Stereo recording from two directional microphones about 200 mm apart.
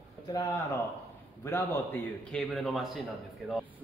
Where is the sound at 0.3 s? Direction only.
15° left (ahead or behind).